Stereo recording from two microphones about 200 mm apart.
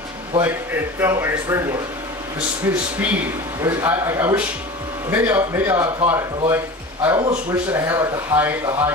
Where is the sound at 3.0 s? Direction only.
10° right (ahead or behind).